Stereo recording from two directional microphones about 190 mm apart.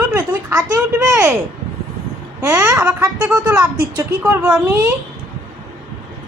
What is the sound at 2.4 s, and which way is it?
A woman's voice, 10° right (ahead or behind).